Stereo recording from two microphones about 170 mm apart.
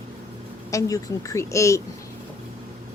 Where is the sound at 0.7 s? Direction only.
20° left (ahead or behind).